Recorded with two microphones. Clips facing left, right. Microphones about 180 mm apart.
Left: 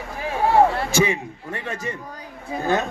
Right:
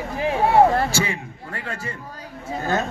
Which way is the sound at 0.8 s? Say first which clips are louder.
Left 4 dB; 20° left (ahead or behind).